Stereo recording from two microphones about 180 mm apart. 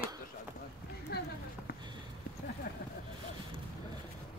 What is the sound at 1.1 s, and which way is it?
Speech, 60° left (ahead or behind).